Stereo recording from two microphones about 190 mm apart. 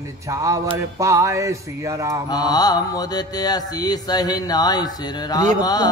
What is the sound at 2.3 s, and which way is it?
Mantra, 20° left (ahead or behind).